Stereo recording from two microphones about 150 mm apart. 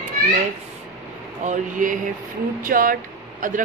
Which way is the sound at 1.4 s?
60° right (ahead or behind).